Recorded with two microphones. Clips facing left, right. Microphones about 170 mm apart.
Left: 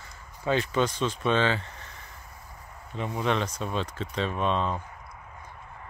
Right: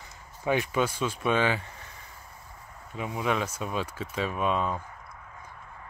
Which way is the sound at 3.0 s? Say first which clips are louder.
Left 1 dB; 5° right (ahead or behind).